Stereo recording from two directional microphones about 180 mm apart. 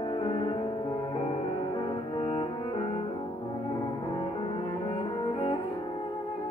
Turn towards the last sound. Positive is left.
turn(degrees=30)  # may be behind; listen again after turning